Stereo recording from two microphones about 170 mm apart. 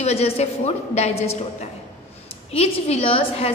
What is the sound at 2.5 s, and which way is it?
A woman's voice, 35° left (ahead or behind).